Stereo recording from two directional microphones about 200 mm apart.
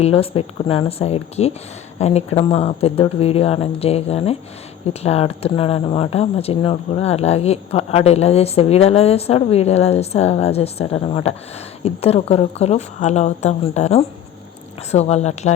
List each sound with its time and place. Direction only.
0.0 s speech: 30° left (ahead or behind)